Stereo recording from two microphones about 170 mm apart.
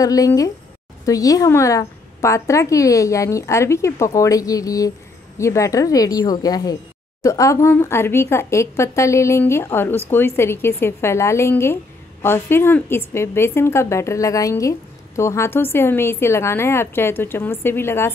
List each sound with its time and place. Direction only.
0.0 s a woman's voice: 20° left (ahead or behind)